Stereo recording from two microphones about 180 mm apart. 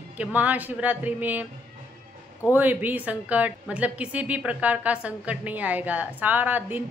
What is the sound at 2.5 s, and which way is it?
A woman's voice, 10° right (ahead or behind).